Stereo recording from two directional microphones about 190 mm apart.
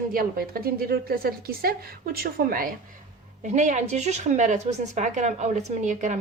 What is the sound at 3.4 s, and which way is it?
A woman's voice, 40° right (ahead or behind).